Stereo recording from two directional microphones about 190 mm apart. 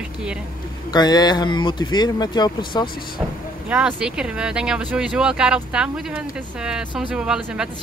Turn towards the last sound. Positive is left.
turn(degrees=-5)  # may be behind; listen again after turning